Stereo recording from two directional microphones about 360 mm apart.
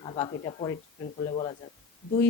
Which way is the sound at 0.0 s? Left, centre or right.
Centre.